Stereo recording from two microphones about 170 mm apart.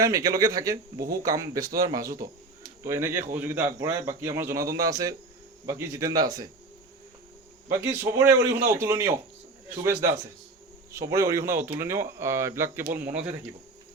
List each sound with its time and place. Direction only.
0.0 s a man's voice: 20° right (ahead or behind)
7.7 s a man's voice: 15° right (ahead or behind)